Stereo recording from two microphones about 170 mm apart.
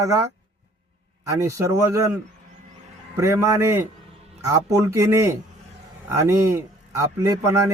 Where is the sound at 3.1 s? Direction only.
15° right (ahead or behind).